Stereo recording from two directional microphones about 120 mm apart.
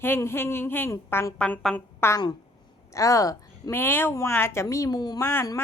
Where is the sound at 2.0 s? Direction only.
20° left (ahead or behind).